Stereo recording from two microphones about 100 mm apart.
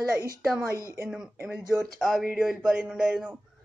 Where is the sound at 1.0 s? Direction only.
5° right (ahead or behind).